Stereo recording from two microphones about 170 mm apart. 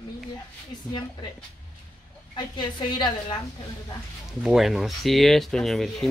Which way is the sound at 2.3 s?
25° left (ahead or behind).